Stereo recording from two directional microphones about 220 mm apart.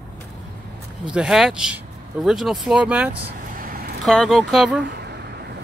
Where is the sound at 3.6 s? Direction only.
45° right (ahead or behind).